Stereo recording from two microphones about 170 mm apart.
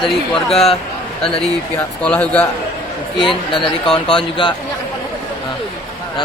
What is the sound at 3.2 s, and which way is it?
Speech, 30° left (ahead or behind).